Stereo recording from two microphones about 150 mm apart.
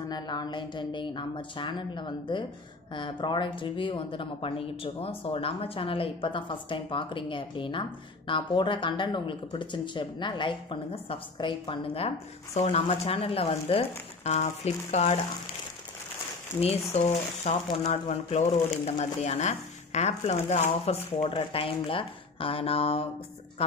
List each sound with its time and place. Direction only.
0.1 s speech: 25° left (ahead or behind); by 15.1 s 50° left (ahead or behind)
16.5 s speech: 45° left (ahead or behind)